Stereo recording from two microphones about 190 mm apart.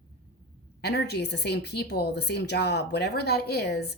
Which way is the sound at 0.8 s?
60° left (ahead or behind).